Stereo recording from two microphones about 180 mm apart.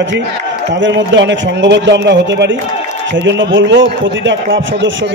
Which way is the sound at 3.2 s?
90° right.